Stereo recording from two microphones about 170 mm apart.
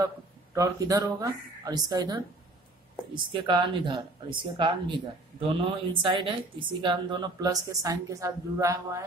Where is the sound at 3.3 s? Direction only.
30° right (ahead or behind).